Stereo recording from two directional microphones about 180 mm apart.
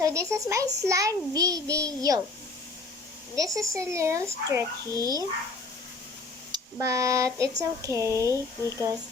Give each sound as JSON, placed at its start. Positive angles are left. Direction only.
{"t": 0.0, "sound": "a child's voice", "side_deg": -15}
{"t": 3.3, "sound": "a child's voice", "side_deg": -20}
{"t": 6.5, "sound": "a child's voice", "side_deg": -15}